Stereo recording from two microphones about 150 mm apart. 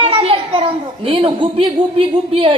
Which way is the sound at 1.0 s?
35° right (ahead or behind).